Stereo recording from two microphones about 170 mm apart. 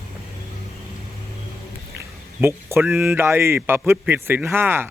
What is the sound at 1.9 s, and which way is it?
Speech, 15° right (ahead or behind).